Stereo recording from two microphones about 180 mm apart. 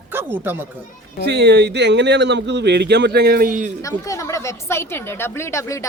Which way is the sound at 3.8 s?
20° left (ahead or behind).